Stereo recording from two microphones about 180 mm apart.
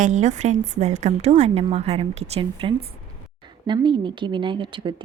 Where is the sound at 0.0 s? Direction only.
40° right (ahead or behind).